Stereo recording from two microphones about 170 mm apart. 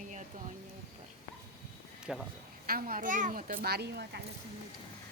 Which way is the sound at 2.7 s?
60° right (ahead or behind).